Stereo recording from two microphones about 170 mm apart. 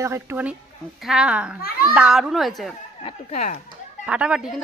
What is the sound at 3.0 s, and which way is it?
Speech, 40° left (ahead or behind).